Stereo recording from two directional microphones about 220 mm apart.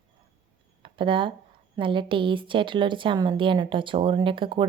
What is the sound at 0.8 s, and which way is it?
A woman's voice, 20° right (ahead or behind).